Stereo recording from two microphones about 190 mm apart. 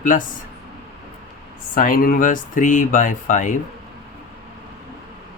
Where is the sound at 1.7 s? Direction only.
45° left (ahead or behind).